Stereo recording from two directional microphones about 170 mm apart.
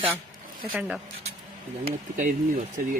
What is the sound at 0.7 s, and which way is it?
Speech, 10° right (ahead or behind).